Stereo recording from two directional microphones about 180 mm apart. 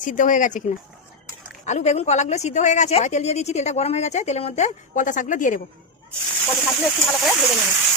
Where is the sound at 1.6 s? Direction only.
40° left (ahead or behind).